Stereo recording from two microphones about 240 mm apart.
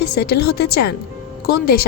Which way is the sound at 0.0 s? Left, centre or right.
Left.